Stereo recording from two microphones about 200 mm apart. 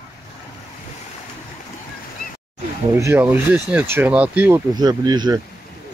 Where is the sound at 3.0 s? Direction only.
10° right (ahead or behind).